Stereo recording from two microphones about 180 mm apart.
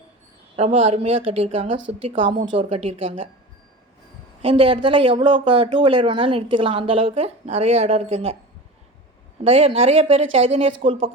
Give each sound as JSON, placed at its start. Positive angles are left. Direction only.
{"t": 0.5, "sound": "speech", "side_deg": -35}
{"t": 4.4, "sound": "speech", "side_deg": -30}
{"t": 9.4, "sound": "speech", "side_deg": -35}